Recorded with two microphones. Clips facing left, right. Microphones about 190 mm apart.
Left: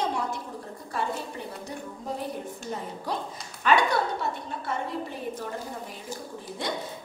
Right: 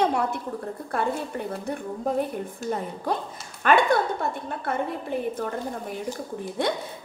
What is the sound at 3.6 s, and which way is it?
Speech, 55° right (ahead or behind).